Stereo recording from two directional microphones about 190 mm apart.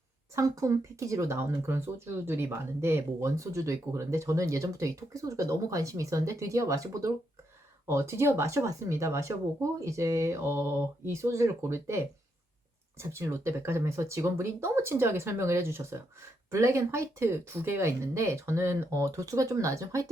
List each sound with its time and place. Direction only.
0.3 s speech: 15° right (ahead or behind)